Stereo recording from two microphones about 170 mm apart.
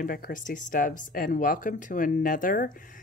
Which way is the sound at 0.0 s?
55° left (ahead or behind).